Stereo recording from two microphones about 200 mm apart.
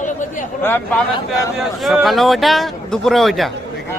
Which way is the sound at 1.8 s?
Centre (ahead or behind).